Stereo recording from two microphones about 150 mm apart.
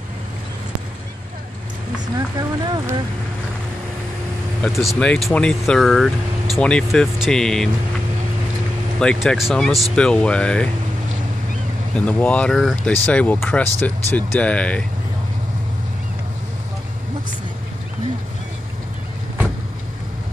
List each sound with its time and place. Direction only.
2.1 s a sound: 25° right (ahead or behind)
4.6 s speech: 5° left (ahead or behind)
9.0 s speech: 5° left (ahead or behind)
12.0 s speech: 10° left (ahead or behind)